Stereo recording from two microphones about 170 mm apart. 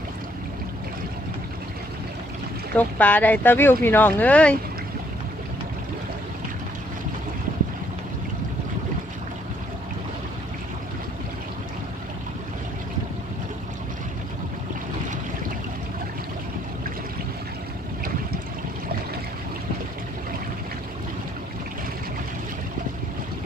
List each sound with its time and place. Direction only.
2.7 s speech: 10° left (ahead or behind)